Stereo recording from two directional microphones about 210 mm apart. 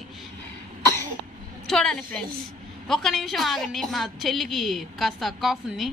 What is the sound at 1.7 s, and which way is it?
A woman's voice, centre (ahead or behind).